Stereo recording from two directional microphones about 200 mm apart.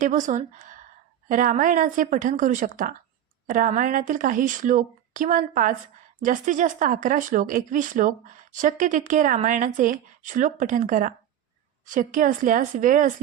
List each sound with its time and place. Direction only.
0.0 s a woman's voice: 40° right (ahead or behind)